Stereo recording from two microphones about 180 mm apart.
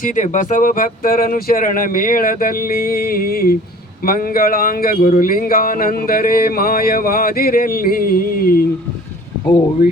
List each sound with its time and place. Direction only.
0.0 s speech: 45° left (ahead or behind)